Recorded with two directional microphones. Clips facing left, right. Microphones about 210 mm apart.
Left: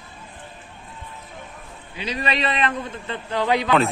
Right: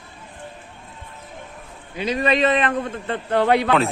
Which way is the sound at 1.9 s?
50° right (ahead or behind).